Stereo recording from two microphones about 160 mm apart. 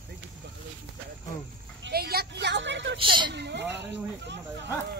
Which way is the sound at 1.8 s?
80° right.